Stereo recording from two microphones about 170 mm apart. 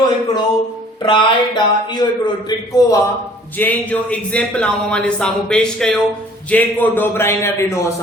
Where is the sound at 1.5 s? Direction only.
25° left (ahead or behind).